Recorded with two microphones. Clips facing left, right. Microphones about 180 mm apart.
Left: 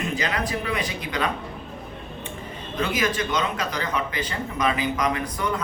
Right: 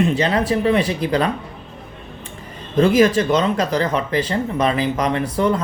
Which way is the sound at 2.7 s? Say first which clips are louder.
Right 11 dB; 35° right (ahead or behind).